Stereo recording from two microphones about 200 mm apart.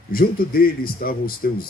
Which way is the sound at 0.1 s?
45° left (ahead or behind).